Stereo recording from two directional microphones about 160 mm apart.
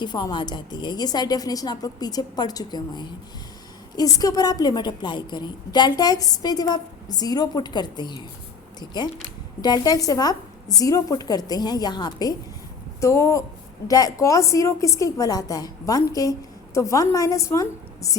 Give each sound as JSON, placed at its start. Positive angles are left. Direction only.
{"t": 0.0, "sound": "a woman's voice", "side_deg": 25}